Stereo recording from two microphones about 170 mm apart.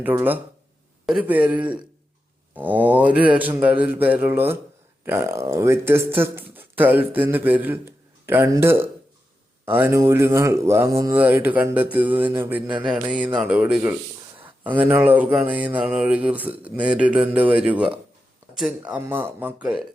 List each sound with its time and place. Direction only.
0.0 s speech: 10° right (ahead or behind)